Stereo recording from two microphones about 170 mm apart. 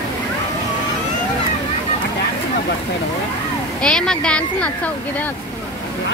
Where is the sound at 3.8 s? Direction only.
5° left (ahead or behind).